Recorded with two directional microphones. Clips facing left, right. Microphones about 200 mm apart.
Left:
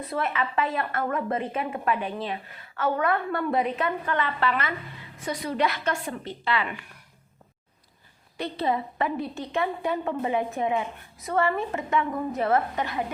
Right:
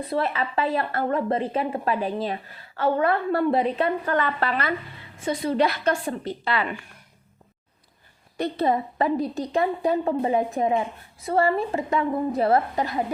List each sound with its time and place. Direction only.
0.1 s a woman's voice: 35° right (ahead or behind)
5.2 s a woman's voice: 25° right (ahead or behind)
8.4 s a woman's voice: 45° right (ahead or behind)